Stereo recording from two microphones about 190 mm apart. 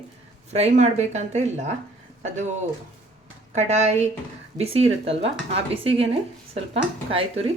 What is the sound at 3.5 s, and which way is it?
Speech, 35° right (ahead or behind).